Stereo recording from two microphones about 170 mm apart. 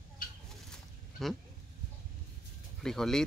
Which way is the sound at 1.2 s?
Centre (ahead or behind).